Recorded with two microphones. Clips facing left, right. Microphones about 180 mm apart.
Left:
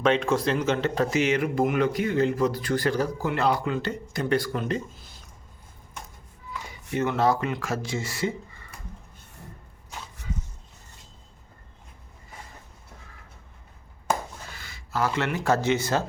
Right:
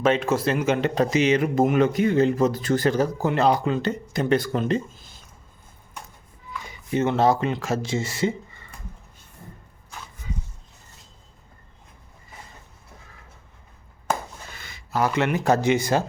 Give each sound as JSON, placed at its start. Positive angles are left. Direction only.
{"t": 0.0, "sound": "speech", "side_deg": -5}
{"t": 6.9, "sound": "speech", "side_deg": -25}
{"t": 14.6, "sound": "speech", "side_deg": -20}